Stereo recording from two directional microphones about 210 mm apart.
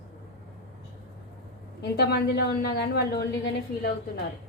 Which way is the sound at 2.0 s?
50° left (ahead or behind).